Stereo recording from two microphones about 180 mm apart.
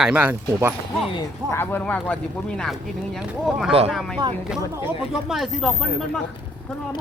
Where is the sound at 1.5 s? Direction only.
10° left (ahead or behind).